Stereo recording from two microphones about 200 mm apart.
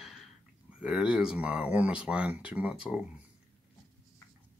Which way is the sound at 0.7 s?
5° right (ahead or behind).